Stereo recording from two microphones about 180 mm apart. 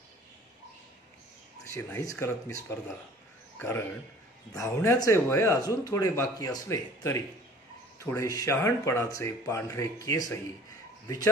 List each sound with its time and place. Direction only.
1.7 s speech: 15° left (ahead or behind)
3.5 s a man's voice: 10° left (ahead or behind)